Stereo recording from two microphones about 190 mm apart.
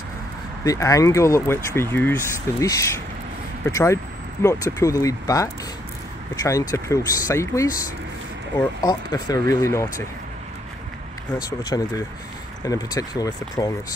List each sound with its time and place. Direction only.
0.7 s speech: 15° left (ahead or behind)
11.7 s speech: 15° left (ahead or behind)